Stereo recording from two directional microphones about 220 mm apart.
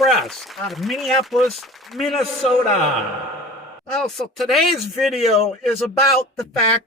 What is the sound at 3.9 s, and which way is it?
A man's voice, centre (ahead or behind).